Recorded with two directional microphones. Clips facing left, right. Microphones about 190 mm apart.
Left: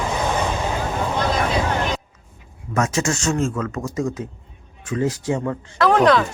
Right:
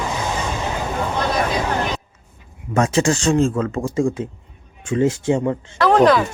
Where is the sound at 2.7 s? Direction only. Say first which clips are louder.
Right 4 dB; 30° right (ahead or behind).